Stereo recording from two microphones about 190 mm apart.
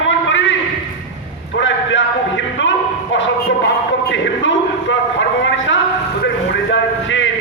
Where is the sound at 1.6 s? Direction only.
80° left.